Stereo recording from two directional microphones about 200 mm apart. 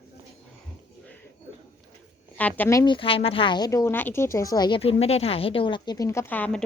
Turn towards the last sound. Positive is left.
turn(degrees=10)  # may be behind; listen again after turning